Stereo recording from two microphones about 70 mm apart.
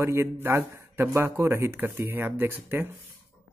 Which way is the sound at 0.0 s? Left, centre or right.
Right.